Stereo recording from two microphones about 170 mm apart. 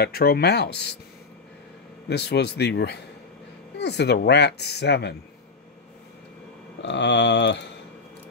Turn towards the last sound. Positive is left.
turn(degrees=90)